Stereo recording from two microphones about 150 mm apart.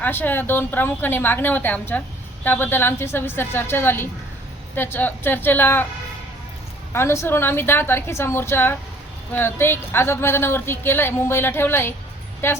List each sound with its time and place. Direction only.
0.0 s a woman's voice: 15° left (ahead or behind)
6.9 s a woman's voice: 15° left (ahead or behind)